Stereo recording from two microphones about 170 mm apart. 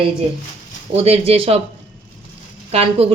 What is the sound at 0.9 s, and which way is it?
Speech, 35° right (ahead or behind).